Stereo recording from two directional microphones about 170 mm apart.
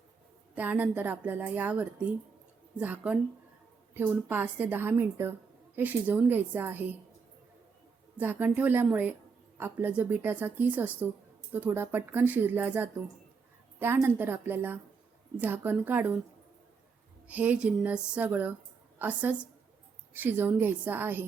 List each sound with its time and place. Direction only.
0.5 s a woman's voice: 10° right (ahead or behind)
8.2 s a woman's voice: 10° right (ahead or behind)
17.2 s a woman's voice: 10° right (ahead or behind)